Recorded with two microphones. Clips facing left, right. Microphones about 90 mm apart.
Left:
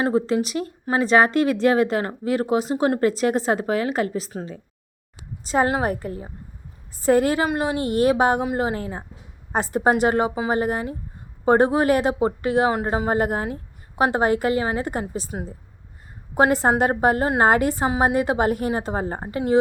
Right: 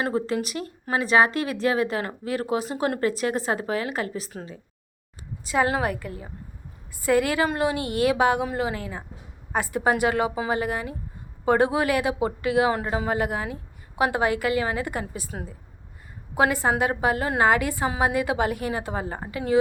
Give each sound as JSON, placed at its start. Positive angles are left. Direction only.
{"t": 0.0, "sound": "a woman's voice", "side_deg": 30}
{"t": 16.6, "sound": "speech", "side_deg": 40}